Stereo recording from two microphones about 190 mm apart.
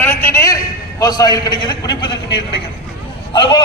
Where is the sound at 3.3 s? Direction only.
25° left (ahead or behind).